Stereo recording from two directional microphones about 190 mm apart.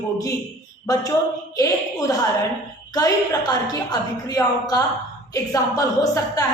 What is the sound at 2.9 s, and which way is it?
A woman's voice, 20° left (ahead or behind).